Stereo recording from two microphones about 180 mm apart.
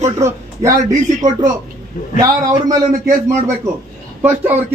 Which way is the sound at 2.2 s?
20° right (ahead or behind).